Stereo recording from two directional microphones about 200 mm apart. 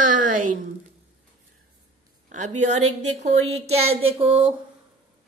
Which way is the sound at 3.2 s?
30° right (ahead or behind).